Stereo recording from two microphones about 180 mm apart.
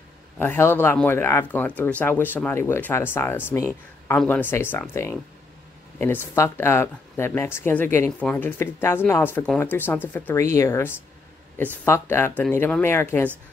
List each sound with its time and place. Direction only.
0.4 s speech: 10° left (ahead or behind)